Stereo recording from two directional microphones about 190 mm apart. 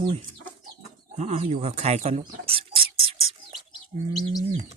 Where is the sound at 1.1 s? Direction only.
35° right (ahead or behind).